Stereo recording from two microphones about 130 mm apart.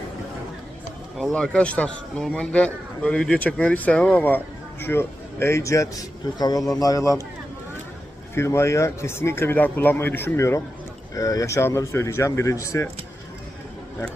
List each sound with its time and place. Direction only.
1.2 s a man's voice: 5° left (ahead or behind); by 7.3 s 25° left (ahead or behind)
8.4 s speech: 20° left (ahead or behind)